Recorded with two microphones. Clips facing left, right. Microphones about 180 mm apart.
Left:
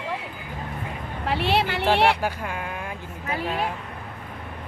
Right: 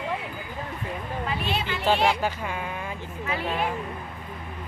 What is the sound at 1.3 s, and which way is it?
Speech, 70° left (ahead or behind).